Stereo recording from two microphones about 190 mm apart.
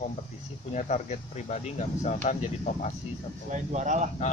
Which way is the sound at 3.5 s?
40° right (ahead or behind).